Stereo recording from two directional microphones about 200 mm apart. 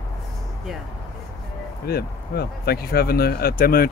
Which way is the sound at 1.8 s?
50° left (ahead or behind).